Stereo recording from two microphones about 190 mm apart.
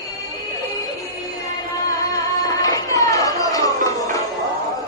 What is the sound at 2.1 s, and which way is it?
Music, 20° left (ahead or behind).